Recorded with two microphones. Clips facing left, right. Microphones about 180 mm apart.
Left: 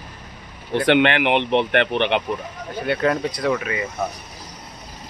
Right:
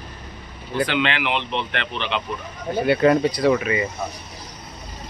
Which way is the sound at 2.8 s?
5° right (ahead or behind).